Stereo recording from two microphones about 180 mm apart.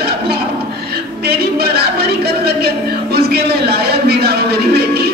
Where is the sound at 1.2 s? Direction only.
60° right (ahead or behind).